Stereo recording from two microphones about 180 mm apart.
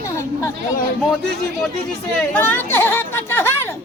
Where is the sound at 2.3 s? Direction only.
10° left (ahead or behind).